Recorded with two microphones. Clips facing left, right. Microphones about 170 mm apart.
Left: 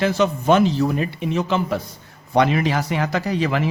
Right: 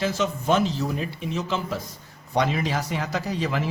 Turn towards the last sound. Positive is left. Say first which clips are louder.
# left 5 dB
turn(degrees=70)  # may be behind; listen again after turning